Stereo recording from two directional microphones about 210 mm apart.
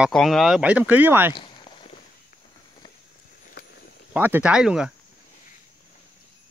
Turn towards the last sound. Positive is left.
turn(degrees=-5)  # may be behind; listen again after turning